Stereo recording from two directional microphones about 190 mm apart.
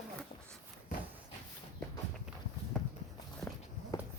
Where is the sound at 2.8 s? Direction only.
5° left (ahead or behind).